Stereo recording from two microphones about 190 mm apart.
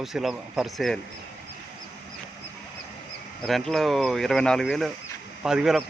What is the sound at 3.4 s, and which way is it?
Speech, centre (ahead or behind).